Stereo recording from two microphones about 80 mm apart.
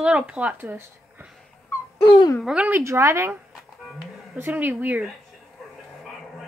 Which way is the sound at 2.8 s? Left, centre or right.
Right.